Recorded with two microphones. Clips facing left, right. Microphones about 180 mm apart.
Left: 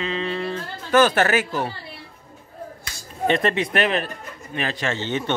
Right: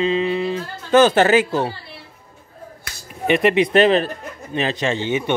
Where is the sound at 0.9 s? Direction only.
20° right (ahead or behind).